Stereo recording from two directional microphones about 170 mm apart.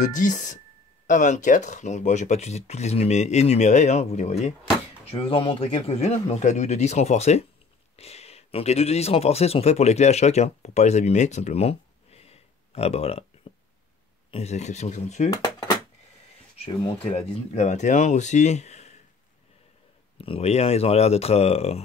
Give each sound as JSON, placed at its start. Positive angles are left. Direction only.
{"t": 0.0, "sound": "speech", "side_deg": 50}
{"t": 16.5, "sound": "speech", "side_deg": 35}
{"t": 20.2, "sound": "speech", "side_deg": 35}